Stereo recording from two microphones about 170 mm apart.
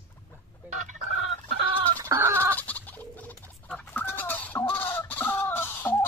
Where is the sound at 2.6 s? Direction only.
10° left (ahead or behind).